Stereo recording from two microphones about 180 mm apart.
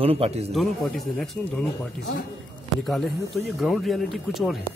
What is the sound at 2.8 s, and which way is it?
Speech, centre (ahead or behind).